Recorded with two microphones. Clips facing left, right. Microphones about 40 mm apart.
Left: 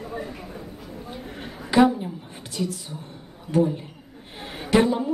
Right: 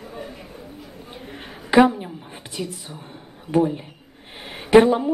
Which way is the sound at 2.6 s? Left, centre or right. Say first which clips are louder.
Left 2 dB; right.